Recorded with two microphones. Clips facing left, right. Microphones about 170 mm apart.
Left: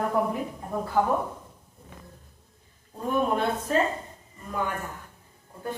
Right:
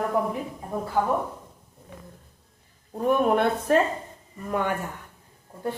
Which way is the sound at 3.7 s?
65° right (ahead or behind).